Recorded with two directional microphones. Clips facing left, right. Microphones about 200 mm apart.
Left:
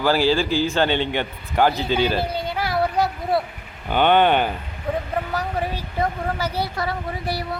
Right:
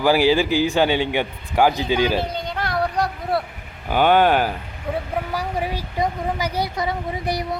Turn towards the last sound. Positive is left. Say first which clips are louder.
# right 2 dB
turn(degrees=-20)  # may be behind; listen again after turning